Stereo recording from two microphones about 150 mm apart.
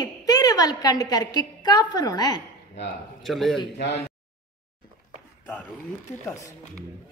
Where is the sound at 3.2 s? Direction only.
Centre (ahead or behind).